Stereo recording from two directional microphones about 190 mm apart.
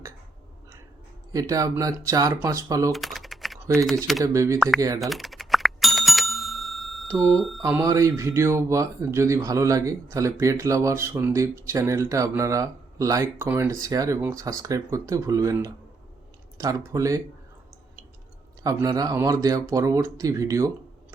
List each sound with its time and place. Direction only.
1.3 s speech: 20° right (ahead or behind)
2.9 s typing: centre (ahead or behind)
4.2 s speech: 15° right (ahead or behind)
4.9 s bicycle bell: centre (ahead or behind)
7.1 s speech: 15° right (ahead or behind)
7.3 s speech: centre (ahead or behind)
7.6 s speech: 15° right (ahead or behind)
18.6 s speech: 20° right (ahead or behind)